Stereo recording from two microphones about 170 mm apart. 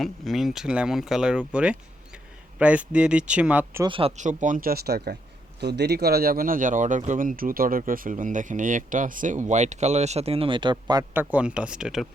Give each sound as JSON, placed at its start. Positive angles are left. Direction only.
{"t": 0.0, "sound": "speech", "side_deg": 0}
{"t": 3.8, "sound": "speech", "side_deg": -30}
{"t": 4.2, "sound": "speech", "side_deg": -45}
{"t": 5.5, "sound": "speech", "side_deg": -80}
{"t": 11.1, "sound": "speech", "side_deg": -10}